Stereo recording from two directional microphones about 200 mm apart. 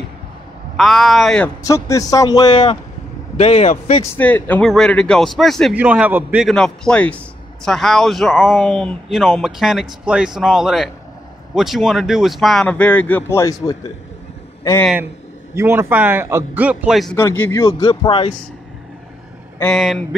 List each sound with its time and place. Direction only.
0.7 s speech: centre (ahead or behind)
1.6 s speech: 15° left (ahead or behind)
3.3 s a man's voice: 35° left (ahead or behind)
4.0 s a man's voice: 10° left (ahead or behind)
15.5 s speech: 10° right (ahead or behind)
17.2 s speech: 10° left (ahead or behind)
19.6 s speech: centre (ahead or behind)